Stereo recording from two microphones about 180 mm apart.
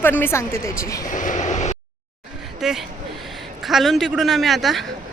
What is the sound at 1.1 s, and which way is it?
Vehicle, 45° left (ahead or behind).